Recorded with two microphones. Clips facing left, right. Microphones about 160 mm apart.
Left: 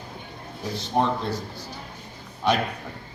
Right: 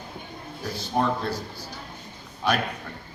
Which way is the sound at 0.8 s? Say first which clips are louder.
Left 1 dB; 20° left (ahead or behind).